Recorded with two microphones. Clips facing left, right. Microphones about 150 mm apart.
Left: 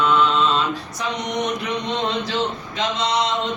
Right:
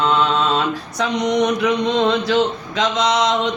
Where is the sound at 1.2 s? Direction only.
90° right.